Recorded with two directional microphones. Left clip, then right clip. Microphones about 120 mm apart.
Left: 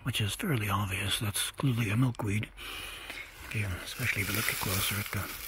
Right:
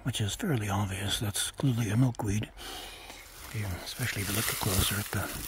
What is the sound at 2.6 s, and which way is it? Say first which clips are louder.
Speech: left 1 dB; 55° right (ahead or behind).